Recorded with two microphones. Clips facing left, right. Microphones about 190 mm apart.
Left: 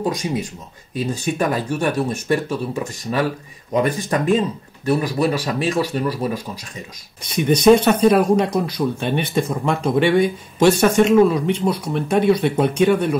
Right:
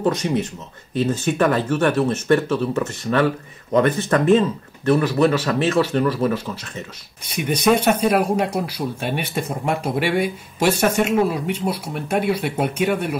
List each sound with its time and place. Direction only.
0.0 s speech: 10° left (ahead or behind)
7.2 s speech: 10° right (ahead or behind)